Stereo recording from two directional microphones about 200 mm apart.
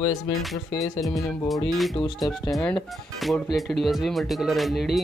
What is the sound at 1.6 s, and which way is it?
Speech, centre (ahead or behind).